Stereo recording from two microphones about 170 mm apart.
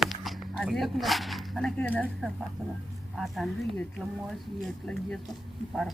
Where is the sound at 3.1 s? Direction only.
Centre (ahead or behind).